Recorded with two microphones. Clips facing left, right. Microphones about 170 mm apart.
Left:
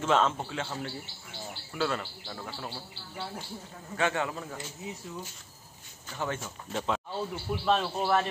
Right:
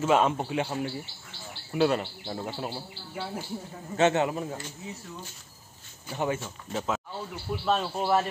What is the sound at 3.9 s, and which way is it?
Speech, 20° right (ahead or behind).